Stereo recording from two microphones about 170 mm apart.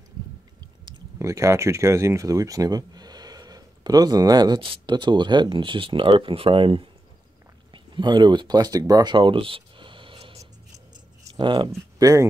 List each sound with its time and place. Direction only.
0.8 s speech: 25° right (ahead or behind)